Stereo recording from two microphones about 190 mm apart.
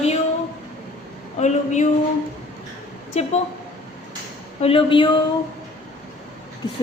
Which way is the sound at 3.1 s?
35° left (ahead or behind).